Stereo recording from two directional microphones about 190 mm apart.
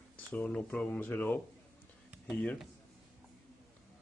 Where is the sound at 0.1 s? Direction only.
5° left (ahead or behind).